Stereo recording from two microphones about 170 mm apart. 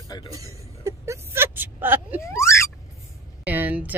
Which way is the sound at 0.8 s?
15° right (ahead or behind).